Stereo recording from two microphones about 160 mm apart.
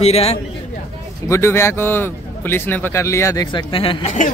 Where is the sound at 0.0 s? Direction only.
40° left (ahead or behind).